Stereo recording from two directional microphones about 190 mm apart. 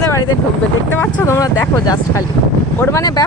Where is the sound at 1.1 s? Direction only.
15° left (ahead or behind).